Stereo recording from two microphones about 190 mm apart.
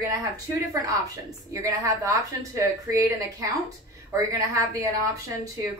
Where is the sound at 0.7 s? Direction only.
20° right (ahead or behind).